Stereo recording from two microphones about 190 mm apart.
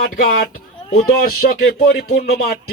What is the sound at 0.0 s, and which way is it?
Speech, 50° left (ahead or behind).